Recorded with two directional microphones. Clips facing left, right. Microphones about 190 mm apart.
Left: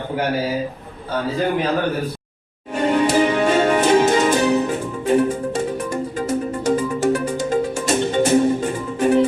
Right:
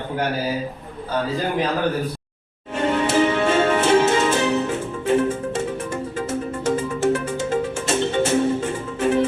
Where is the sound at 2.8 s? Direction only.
15° left (ahead or behind).